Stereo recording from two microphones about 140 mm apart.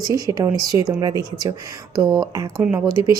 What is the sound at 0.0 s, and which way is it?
A woman's voice, 25° right (ahead or behind).